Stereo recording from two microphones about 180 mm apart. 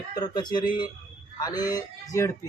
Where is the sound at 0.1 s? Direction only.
25° left (ahead or behind).